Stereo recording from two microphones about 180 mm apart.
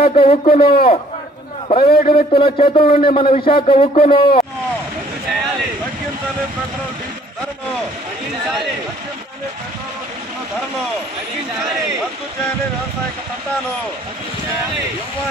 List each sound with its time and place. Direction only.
0.0 s a man's voice: 30° left (ahead or behind)